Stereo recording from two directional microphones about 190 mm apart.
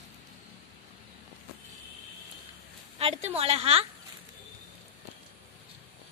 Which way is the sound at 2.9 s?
35° right (ahead or behind).